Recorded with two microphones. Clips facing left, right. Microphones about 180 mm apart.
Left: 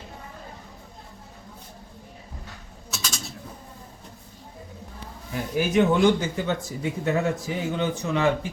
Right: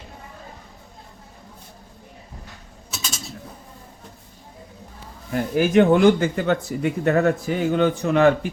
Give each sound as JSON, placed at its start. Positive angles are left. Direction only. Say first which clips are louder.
{"t": 5.3, "sound": "speech", "louder": "right 6 dB", "side_deg": -55}